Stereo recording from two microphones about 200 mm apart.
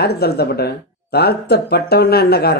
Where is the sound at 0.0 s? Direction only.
55° left (ahead or behind).